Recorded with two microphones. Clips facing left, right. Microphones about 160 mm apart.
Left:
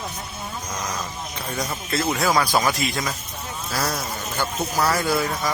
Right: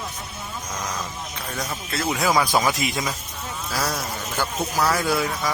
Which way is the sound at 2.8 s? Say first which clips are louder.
Even; 15° right (ahead or behind).